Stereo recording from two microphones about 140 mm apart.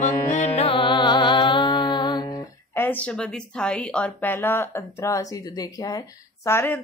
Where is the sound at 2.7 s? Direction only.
15° left (ahead or behind).